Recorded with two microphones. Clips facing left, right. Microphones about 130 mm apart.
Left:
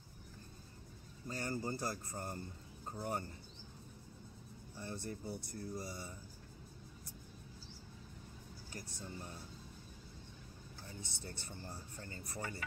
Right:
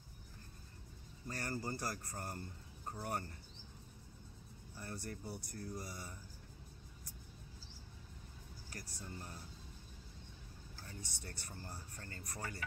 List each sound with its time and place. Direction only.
1.3 s speech: 25° left (ahead or behind)
4.7 s speech: 25° left (ahead or behind)
8.7 s speech: 25° left (ahead or behind)
10.9 s speech: 25° left (ahead or behind)